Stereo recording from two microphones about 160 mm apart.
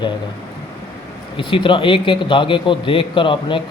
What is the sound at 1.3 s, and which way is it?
Speech, 30° left (ahead or behind).